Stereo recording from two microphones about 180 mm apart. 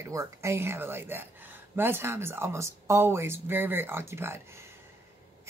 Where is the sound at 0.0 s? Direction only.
15° right (ahead or behind).